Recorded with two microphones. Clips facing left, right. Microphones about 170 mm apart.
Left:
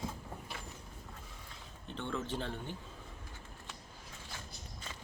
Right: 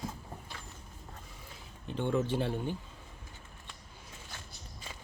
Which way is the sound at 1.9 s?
15° right (ahead or behind).